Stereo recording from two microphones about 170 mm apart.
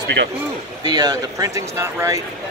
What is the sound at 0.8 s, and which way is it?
Speech, 25° right (ahead or behind).